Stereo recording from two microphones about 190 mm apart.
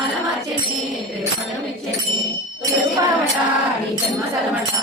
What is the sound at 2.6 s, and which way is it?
Jingle bell, 15° right (ahead or behind).